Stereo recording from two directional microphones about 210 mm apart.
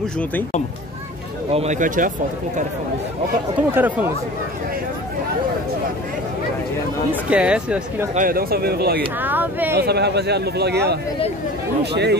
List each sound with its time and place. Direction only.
0.2 s speech: 10° left (ahead or behind)
1.5 s speech: 30° right (ahead or behind)
3.5 s speech: 10° right (ahead or behind)
7.1 s speech: 5° right (ahead or behind)
8.1 s a man's voice: 40° right (ahead or behind)
9.2 s speech: 10° right (ahead or behind)
9.8 s a man's voice: 50° right (ahead or behind)